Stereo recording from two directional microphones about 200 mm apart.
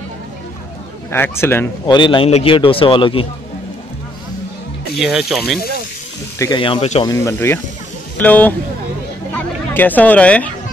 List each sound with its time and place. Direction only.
1.1 s speech: 10° left (ahead or behind)
2.0 s a man's voice: 25° left (ahead or behind)
4.9 s speech: centre (ahead or behind)
6.3 s speech: 15° left (ahead or behind)
6.6 s a man's voice: 30° left (ahead or behind)
7.1 s speech: 15° left (ahead or behind)